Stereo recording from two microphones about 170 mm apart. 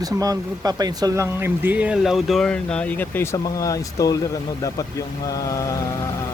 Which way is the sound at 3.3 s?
20° left (ahead or behind).